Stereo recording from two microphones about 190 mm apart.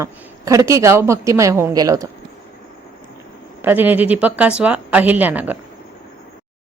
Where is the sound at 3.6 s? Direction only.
10° right (ahead or behind).